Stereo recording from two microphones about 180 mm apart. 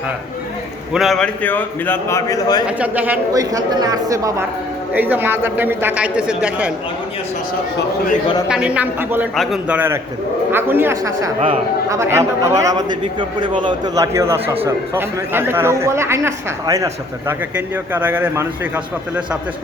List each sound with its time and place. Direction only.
0.9 s a man's voice: centre (ahead or behind); by 2.6 s 20° left (ahead or behind)
2.6 s a man's voice: 10° right (ahead or behind)
3.3 s a man's voice: 20° right (ahead or behind)
8.4 s a man's voice: 5° right (ahead or behind)
9.3 s a man's voice: centre (ahead or behind)